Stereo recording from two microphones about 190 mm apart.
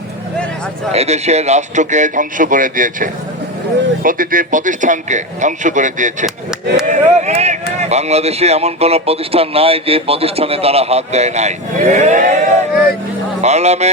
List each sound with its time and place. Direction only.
0.9 s speech: 35° right (ahead or behind)
6.8 s a sound: 40° right (ahead or behind)
7.8 s speech: 35° right (ahead or behind)